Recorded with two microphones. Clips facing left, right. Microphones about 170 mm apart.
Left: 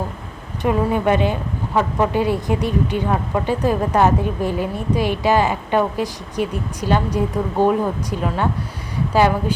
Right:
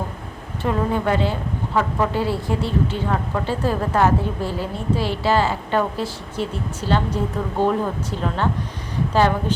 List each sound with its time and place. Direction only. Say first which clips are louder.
0.6 s a woman's voice: left 3 dB; 15° left (ahead or behind)